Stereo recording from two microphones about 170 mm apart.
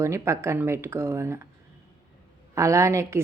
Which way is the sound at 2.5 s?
15° right (ahead or behind).